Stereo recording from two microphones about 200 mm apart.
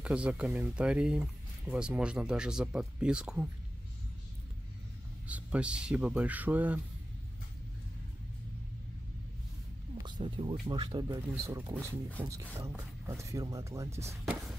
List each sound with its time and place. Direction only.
0.0 s speech: 5° right (ahead or behind)
5.2 s speech: 5° right (ahead or behind)
10.1 s speech: 25° right (ahead or behind)